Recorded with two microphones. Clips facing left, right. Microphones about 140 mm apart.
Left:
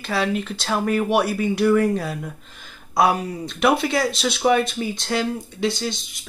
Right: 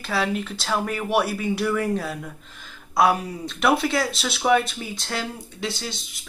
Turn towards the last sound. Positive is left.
turn(degrees=-5)  # may be behind; listen again after turning